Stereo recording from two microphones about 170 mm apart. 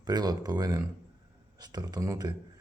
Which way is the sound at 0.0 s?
25° right (ahead or behind).